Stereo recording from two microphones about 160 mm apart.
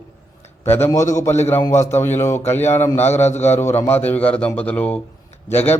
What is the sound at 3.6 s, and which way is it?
A man's voice, 15° left (ahead or behind).